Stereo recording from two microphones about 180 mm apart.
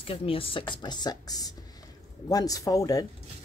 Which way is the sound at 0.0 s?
30° left (ahead or behind).